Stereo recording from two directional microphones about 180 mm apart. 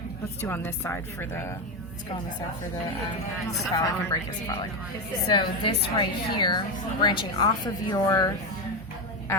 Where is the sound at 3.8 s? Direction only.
20° left (ahead or behind).